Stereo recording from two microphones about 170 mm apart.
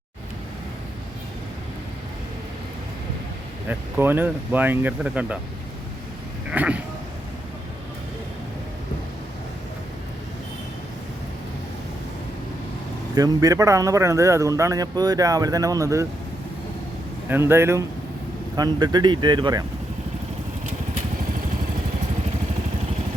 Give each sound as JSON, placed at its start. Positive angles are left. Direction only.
{"t": 3.7, "sound": "speech", "side_deg": -10}
{"t": 6.5, "sound": "a sound", "side_deg": -10}
{"t": 13.1, "sound": "a man's voice", "side_deg": -20}
{"t": 17.2, "sound": "a man's voice", "side_deg": -15}